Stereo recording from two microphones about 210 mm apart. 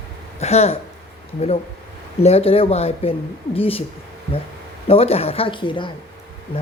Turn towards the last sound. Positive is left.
turn(degrees=25)  # may be behind; listen again after turning